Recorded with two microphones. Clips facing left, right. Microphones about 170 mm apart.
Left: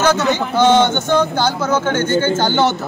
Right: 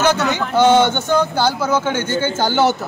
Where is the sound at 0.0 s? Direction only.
15° right (ahead or behind).